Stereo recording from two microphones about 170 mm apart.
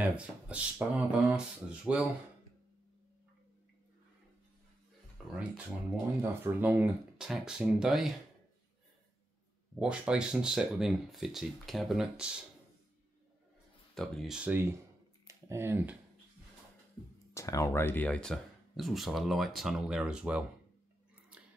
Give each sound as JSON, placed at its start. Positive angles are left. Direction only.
{"t": 0.0, "sound": "speech", "side_deg": -5}
{"t": 5.3, "sound": "speech", "side_deg": -5}
{"t": 9.8, "sound": "speech", "side_deg": -5}
{"t": 13.9, "sound": "speech", "side_deg": 0}
{"t": 17.3, "sound": "speech", "side_deg": 20}